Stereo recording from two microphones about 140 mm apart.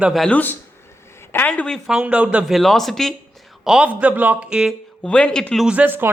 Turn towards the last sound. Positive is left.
turn(degrees=-15)  # may be behind; listen again after turning